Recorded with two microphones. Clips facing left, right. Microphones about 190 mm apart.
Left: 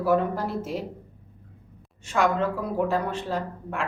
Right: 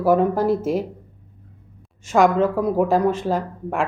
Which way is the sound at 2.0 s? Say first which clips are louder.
Right 7 dB; 45° right (ahead or behind).